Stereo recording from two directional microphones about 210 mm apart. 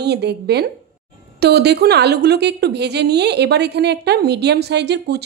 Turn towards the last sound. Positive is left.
turn(degrees=-50)  # may be behind; listen again after turning